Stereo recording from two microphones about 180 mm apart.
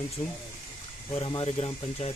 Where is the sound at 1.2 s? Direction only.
30° left (ahead or behind).